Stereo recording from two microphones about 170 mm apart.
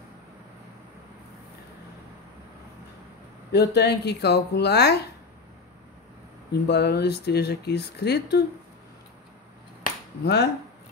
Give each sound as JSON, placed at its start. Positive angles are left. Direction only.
{"t": 3.5, "sound": "speech", "side_deg": 80}
{"t": 6.7, "sound": "speech", "side_deg": 75}
{"t": 10.2, "sound": "speech", "side_deg": 75}